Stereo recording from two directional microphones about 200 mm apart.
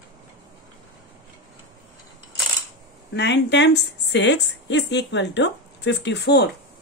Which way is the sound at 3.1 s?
60° left (ahead or behind).